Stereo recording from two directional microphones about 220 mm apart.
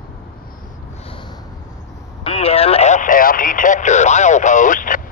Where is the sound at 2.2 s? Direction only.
25° left (ahead or behind).